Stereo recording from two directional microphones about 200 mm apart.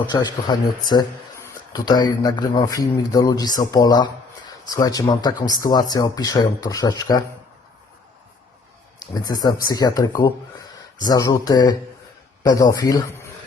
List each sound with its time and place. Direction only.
0.1 s speech: 20° left (ahead or behind)
9.1 s speech: 20° left (ahead or behind)